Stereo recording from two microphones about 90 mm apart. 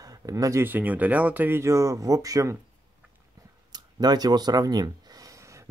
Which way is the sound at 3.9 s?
45° right (ahead or behind).